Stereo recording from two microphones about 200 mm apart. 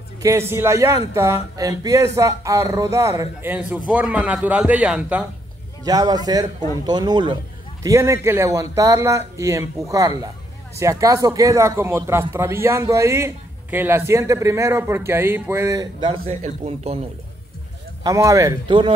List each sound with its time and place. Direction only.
0.2 s speech: 15° right (ahead or behind)
5.9 s a man's voice: 20° right (ahead or behind)
18.0 s speech: 15° right (ahead or behind)